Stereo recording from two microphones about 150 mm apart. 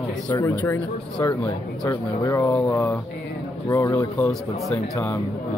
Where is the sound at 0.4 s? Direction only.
15° left (ahead or behind).